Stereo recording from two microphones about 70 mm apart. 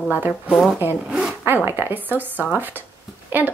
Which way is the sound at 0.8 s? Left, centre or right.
Right.